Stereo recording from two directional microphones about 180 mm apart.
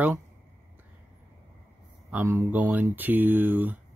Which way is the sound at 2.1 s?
10° right (ahead or behind).